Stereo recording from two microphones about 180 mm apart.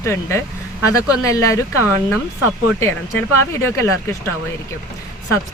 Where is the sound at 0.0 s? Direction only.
15° left (ahead or behind).